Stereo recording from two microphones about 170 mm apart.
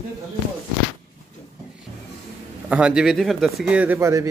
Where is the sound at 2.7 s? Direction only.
5° right (ahead or behind).